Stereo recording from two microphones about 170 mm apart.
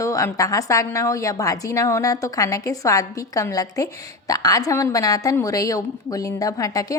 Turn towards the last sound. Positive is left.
turn(degrees=20)  # may be behind; listen again after turning